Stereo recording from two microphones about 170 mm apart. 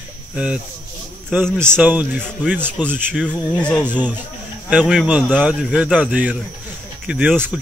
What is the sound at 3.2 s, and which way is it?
Speech, 5° left (ahead or behind).